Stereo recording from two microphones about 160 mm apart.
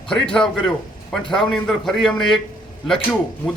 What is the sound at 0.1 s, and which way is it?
A man's voice, 5° left (ahead or behind).